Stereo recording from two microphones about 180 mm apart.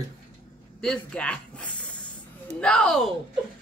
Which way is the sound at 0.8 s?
5° left (ahead or behind).